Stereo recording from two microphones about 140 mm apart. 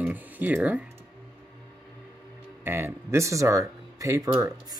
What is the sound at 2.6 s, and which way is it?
Speech, 15° right (ahead or behind).